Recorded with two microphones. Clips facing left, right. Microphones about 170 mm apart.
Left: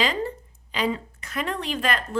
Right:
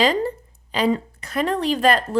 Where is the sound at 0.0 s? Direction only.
35° right (ahead or behind).